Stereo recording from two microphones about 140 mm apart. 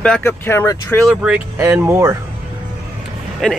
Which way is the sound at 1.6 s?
15° right (ahead or behind).